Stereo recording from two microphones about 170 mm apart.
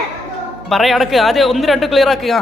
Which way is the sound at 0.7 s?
Centre (ahead or behind).